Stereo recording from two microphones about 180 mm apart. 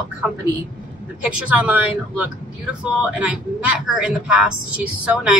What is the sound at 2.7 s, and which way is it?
A woman's voice, 5° right (ahead or behind).